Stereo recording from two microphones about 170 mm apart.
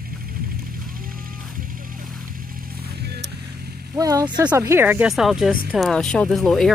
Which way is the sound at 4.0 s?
20° right (ahead or behind).